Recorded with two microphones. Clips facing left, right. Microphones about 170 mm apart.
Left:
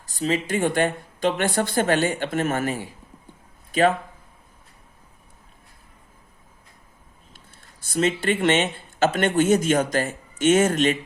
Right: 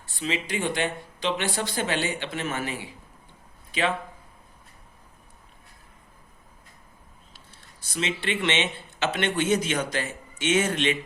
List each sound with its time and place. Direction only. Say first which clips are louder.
0.0 s speech: left 6 dB; 40° left (ahead or behind)
7.3 s speech: left 1 dB; 50° left (ahead or behind)